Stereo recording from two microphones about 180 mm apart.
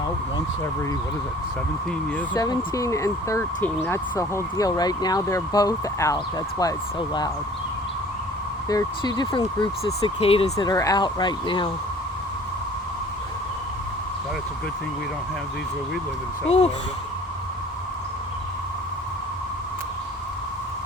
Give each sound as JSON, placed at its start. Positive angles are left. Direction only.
{"t": 2.3, "sound": "speech", "side_deg": 25}
{"t": 8.7, "sound": "speech", "side_deg": 20}
{"t": 16.5, "sound": "speech", "side_deg": 35}